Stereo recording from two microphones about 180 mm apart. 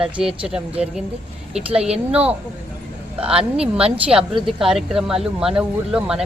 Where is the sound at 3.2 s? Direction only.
5° right (ahead or behind).